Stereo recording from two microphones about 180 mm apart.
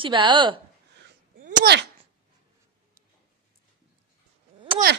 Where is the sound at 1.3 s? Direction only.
45° right (ahead or behind).